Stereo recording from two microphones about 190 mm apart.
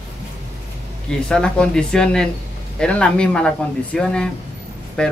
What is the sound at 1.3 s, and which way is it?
Speech, 5° left (ahead or behind).